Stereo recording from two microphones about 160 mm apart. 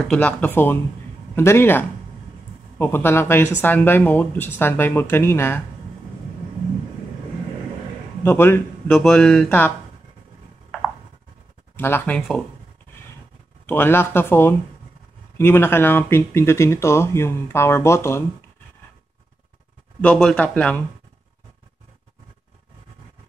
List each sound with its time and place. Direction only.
0.1 s speech: 10° left (ahead or behind)
8.2 s speech: 15° left (ahead or behind)
11.7 s speech: 15° left (ahead or behind)
13.7 s speech: 15° left (ahead or behind)
20.0 s speech: 5° left (ahead or behind)